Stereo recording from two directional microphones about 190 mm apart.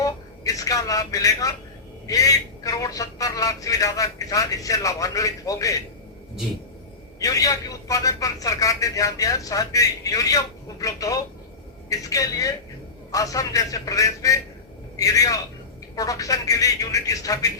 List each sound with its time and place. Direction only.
0.0 s a man's voice: 20° left (ahead or behind)
7.2 s a man's voice: 20° left (ahead or behind)